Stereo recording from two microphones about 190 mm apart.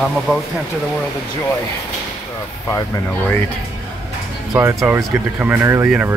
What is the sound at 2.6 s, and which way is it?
Speech, 15° left (ahead or behind).